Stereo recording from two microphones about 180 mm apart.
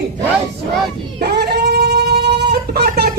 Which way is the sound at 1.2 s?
60° right (ahead or behind).